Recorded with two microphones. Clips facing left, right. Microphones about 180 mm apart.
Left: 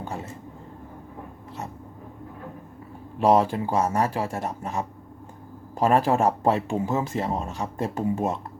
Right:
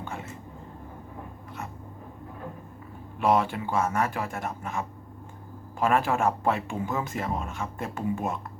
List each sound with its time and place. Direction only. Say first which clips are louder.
0.0 s vehicle: left 4 dB; 35° left (ahead or behind)
3.2 s speech: left 4 dB; 35° left (ahead or behind)